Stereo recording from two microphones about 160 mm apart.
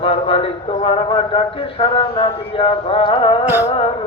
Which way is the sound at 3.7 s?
40° left (ahead or behind).